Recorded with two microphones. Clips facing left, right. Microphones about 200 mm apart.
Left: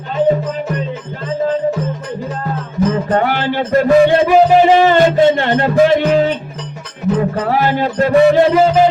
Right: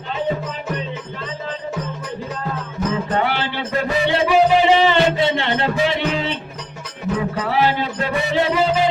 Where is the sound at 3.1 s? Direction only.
50° left (ahead or behind).